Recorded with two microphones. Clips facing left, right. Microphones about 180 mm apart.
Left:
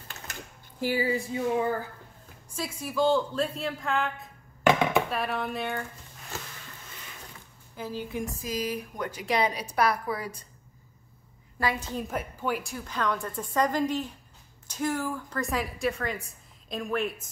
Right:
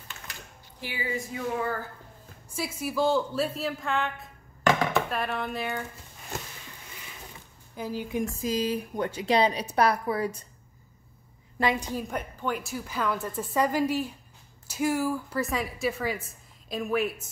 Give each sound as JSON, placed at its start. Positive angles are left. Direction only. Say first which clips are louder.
{"t": 0.1, "sound": "speech", "louder": "left 3 dB", "side_deg": 45}
{"t": 2.5, "sound": "a woman's voice", "louder": "right 1 dB", "side_deg": -10}
{"t": 7.7, "sound": "a woman's voice", "louder": "right 2 dB", "side_deg": -15}
{"t": 8.4, "sound": "speech", "louder": "right 4 dB", "side_deg": -30}
{"t": 11.6, "sound": "speech", "louder": "right 3 dB", "side_deg": -20}
{"t": 11.9, "sound": "a woman's voice", "louder": "even", "side_deg": 0}